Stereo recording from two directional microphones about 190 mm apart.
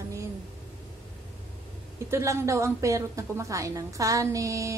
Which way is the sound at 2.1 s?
15° right (ahead or behind).